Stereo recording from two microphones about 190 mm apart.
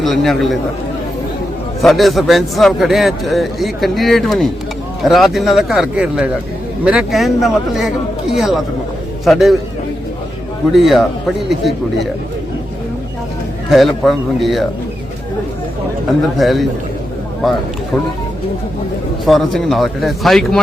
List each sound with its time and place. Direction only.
0.0 s a man's voice: centre (ahead or behind)
1.8 s a man's voice: centre (ahead or behind)
10.7 s a man's voice: centre (ahead or behind)
13.7 s a man's voice: centre (ahead or behind)
16.4 s a man's voice: centre (ahead or behind)
19.2 s a man's voice: centre (ahead or behind)